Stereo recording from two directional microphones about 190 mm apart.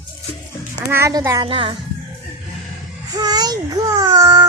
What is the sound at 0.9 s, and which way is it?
Speech, 15° right (ahead or behind).